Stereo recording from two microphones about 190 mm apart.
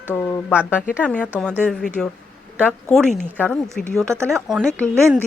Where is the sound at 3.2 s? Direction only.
5° left (ahead or behind).